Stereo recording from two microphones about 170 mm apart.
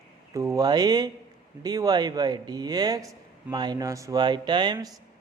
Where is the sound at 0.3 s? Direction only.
20° right (ahead or behind).